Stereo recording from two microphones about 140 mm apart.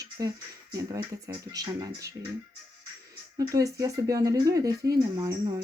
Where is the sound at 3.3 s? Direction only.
25° right (ahead or behind).